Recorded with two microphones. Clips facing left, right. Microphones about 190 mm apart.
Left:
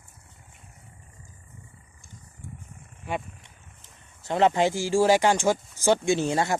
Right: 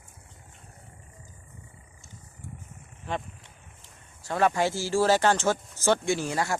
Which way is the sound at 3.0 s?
10° left (ahead or behind).